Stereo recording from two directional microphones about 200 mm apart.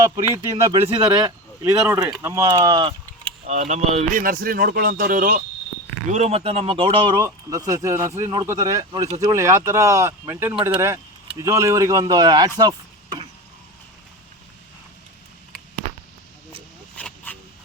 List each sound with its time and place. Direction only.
0.0 s speech: 15° right (ahead or behind)
3.4 s speech: 35° right (ahead or behind)
6.1 s speech: 35° right (ahead or behind)
12.5 s vehicle: 20° right (ahead or behind)
15.8 s a sound: 35° right (ahead or behind)
17.0 s a sound: 5° left (ahead or behind)